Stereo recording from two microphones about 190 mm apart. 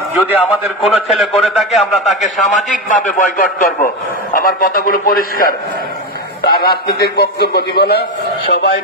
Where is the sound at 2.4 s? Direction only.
45° left (ahead or behind); by 8.0 s 60° left (ahead or behind).